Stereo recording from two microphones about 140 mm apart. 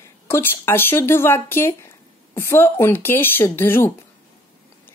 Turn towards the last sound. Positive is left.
turn(degrees=15)  # may be behind; listen again after turning